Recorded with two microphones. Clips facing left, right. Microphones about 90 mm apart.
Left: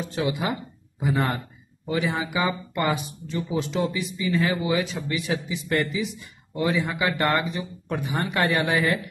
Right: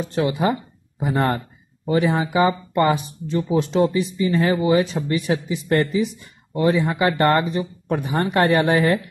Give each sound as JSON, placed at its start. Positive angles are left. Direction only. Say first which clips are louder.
{"t": 0.3, "sound": "speech", "louder": "right 6 dB", "side_deg": -40}